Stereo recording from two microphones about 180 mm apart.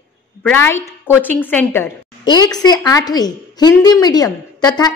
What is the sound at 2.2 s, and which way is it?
A woman's voice, 20° left (ahead or behind).